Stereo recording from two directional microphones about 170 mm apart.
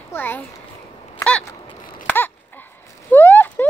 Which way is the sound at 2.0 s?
10° left (ahead or behind).